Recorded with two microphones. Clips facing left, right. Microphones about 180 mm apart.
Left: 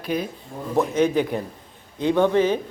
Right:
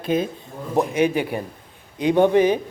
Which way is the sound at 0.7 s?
10° right (ahead or behind).